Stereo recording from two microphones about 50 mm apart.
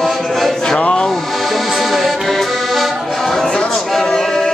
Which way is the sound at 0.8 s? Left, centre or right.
Centre.